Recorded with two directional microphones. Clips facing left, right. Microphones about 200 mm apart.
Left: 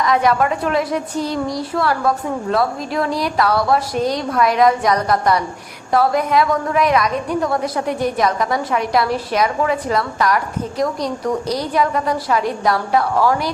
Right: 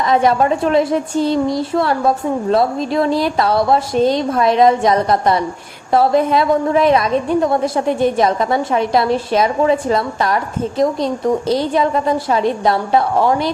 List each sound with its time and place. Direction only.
0.0 s a woman's voice: 25° right (ahead or behind)